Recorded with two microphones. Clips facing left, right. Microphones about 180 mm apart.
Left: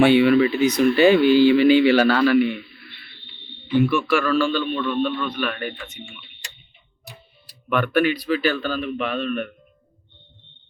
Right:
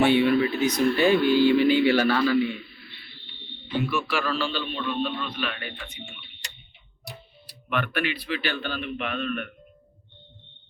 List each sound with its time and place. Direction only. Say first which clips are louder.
0.0 s speech: left 5 dB; 90° left; by 2.6 s 65° left (ahead or behind)
3.8 s a man's voice: left 7 dB; 55° left (ahead or behind)
7.7 s a man's voice: left 8 dB; 45° left (ahead or behind)